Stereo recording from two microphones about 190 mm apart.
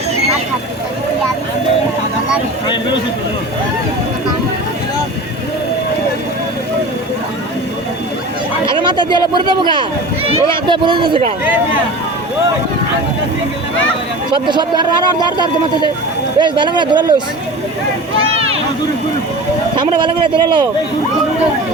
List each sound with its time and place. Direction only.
9.1 s a man's voice: 25° right (ahead or behind)
14.3 s a man's voice: 25° right (ahead or behind)
19.7 s a man's voice: 25° right (ahead or behind)